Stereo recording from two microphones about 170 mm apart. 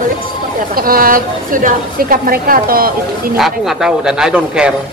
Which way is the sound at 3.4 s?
Centre (ahead or behind).